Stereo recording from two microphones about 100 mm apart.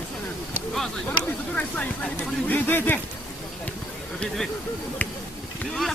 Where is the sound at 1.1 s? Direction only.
15° left (ahead or behind).